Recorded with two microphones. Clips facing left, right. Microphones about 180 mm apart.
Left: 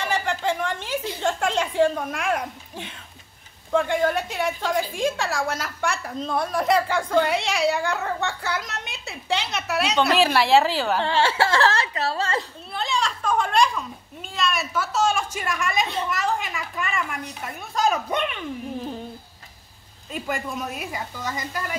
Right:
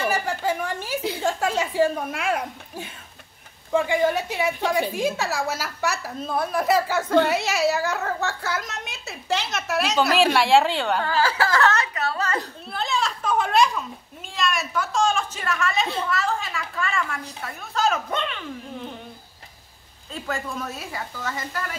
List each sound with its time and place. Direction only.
0.0 s a sound: 5° right (ahead or behind)
1.2 s a woman's voice: 5° right (ahead or behind)
11.0 s a woman's voice: 25° left (ahead or behind)
12.7 s a sound: centre (ahead or behind)
14.3 s a woman's voice: centre (ahead or behind)
20.1 s a woman's voice: 15° left (ahead or behind)